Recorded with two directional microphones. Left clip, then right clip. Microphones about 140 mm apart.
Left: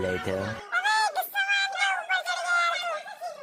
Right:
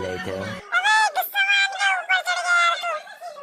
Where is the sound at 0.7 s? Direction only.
20° right (ahead or behind).